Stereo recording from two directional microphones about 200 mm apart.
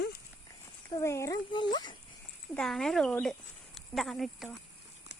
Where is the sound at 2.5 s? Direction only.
5° left (ahead or behind).